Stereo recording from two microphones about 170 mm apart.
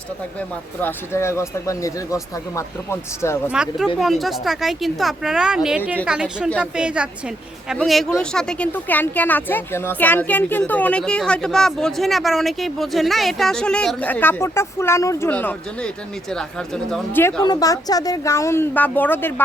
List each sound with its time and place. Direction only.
0.3 s speech: 10° left (ahead or behind)
3.5 s a woman's voice: 5° right (ahead or behind); by 17.4 s 10° left (ahead or behind)
17.4 s speech: 20° left (ahead or behind)